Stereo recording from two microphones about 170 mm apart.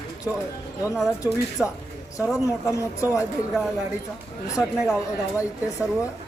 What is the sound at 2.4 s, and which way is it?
Speech, 20° left (ahead or behind).